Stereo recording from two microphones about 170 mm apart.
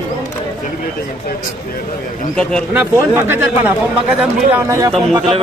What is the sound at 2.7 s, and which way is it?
Speech, 15° right (ahead or behind).